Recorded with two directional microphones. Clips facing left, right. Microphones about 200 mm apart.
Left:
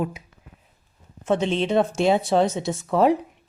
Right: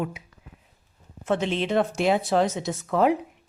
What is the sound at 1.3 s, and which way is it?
Speech, 25° left (ahead or behind).